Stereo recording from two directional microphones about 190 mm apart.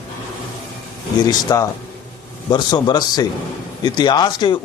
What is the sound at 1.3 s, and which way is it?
Speech, 20° left (ahead or behind).